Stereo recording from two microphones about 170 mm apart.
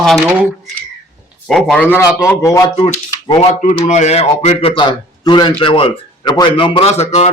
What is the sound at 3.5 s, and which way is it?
Speech, 40° left (ahead or behind).